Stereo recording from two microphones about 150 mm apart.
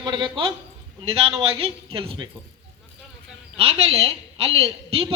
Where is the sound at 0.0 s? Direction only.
30° right (ahead or behind).